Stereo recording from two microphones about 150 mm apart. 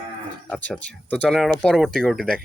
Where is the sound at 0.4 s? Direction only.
5° left (ahead or behind).